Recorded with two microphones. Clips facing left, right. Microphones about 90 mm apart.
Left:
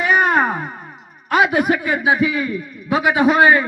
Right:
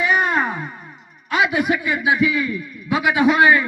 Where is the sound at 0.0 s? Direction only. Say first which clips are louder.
Left 3 dB; 50° left (ahead or behind).